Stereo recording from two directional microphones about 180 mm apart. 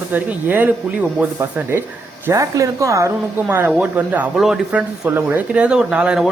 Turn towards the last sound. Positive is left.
turn(degrees=-5)  # may be behind; listen again after turning